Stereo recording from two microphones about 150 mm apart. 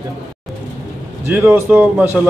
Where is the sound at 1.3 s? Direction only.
15° right (ahead or behind).